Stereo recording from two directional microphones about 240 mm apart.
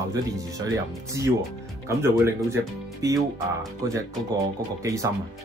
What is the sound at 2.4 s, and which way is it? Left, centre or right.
Speech, centre.